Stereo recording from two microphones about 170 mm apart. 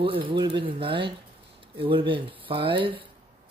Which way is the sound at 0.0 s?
30° right (ahead or behind).